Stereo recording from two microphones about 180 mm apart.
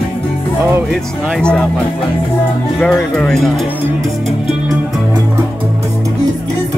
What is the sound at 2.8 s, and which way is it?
Speech, 5° left (ahead or behind).